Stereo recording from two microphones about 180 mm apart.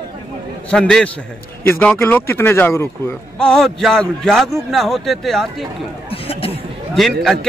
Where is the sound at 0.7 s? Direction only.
5° left (ahead or behind).